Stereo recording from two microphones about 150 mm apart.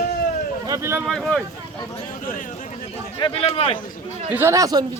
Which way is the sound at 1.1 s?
Centre (ahead or behind).